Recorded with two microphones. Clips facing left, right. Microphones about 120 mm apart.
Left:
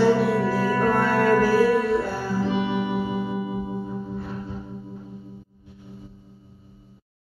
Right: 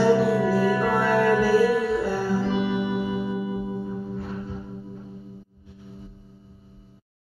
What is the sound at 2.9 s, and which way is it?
Music, 45° left (ahead or behind).